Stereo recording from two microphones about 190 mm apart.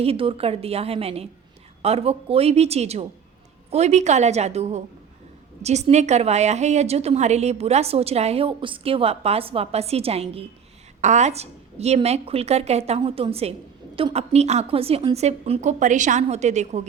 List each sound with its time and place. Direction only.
0.0 s a woman's voice: 30° right (ahead or behind)